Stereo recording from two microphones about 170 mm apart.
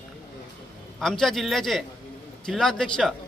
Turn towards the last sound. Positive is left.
turn(degrees=5)  # may be behind; listen again after turning